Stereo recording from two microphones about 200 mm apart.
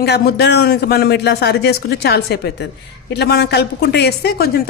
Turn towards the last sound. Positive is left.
turn(degrees=50)  # may be behind; listen again after turning